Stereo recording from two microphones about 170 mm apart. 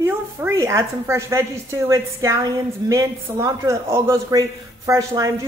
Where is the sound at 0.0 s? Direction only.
15° right (ahead or behind).